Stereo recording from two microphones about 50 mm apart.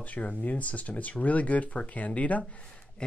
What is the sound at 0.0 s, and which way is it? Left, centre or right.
Speech, left.